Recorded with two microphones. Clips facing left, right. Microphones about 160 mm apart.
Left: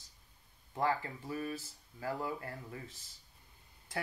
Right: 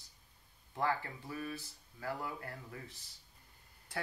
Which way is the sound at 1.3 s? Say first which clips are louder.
Left 3 dB; 40° left (ahead or behind).